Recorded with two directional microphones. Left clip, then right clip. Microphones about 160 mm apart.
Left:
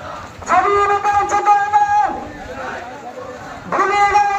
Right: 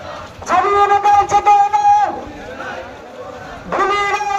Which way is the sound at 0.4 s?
30° right (ahead or behind).